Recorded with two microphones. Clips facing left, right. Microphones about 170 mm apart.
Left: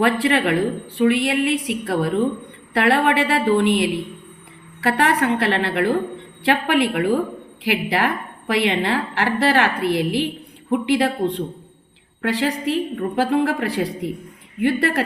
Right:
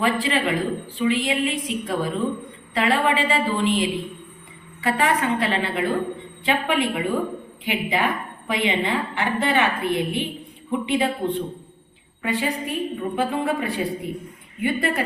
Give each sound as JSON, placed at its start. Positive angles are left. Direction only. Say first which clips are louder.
{"t": 0.0, "sound": "a woman's voice", "louder": "left 4 dB", "side_deg": 70}